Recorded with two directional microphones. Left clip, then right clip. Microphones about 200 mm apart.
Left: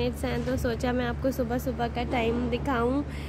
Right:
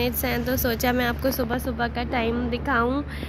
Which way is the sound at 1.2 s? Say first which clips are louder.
Right 3 dB; 10° left (ahead or behind).